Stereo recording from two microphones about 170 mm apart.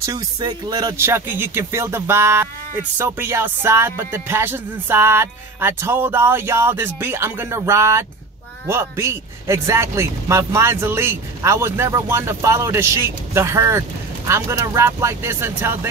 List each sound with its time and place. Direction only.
0.0 s a man's voice: 20° right (ahead or behind)